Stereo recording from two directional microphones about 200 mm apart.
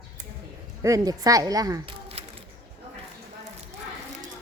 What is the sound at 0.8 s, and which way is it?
A woman's voice, 15° right (ahead or behind).